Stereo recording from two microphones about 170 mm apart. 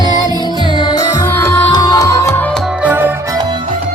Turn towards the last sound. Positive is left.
turn(degrees=-10)  # may be behind; listen again after turning